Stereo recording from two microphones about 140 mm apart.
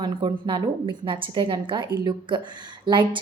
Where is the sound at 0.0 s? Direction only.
35° right (ahead or behind).